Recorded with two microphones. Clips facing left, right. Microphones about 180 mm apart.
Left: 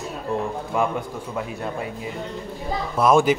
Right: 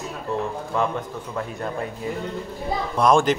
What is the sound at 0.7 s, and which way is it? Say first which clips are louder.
Speech: left 1 dB; 10° left (ahead or behind).